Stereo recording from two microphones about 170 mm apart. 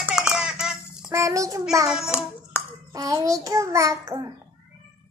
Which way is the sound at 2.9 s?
20° right (ahead or behind).